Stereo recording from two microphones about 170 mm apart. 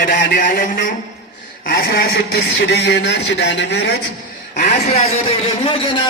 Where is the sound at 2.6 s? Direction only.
80° left.